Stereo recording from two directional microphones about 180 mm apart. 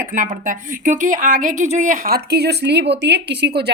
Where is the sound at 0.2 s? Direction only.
45° right (ahead or behind).